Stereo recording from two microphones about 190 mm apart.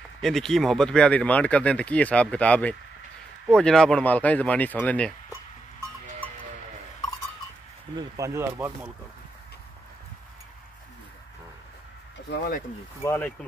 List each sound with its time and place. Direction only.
0.2 s speech: centre (ahead or behind)
7.9 s speech: 15° right (ahead or behind)
12.3 s speech: 50° left (ahead or behind)
13.0 s speech: 15° left (ahead or behind)